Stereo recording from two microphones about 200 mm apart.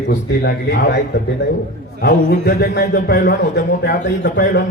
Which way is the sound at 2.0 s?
50° left (ahead or behind).